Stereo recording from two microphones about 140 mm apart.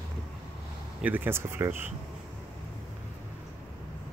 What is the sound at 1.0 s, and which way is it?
Speech, 15° right (ahead or behind).